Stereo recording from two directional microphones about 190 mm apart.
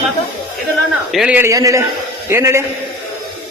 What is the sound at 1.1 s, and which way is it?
A man's voice, 5° right (ahead or behind).